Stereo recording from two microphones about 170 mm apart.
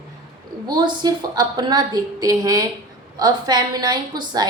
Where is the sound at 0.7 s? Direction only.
25° right (ahead or behind).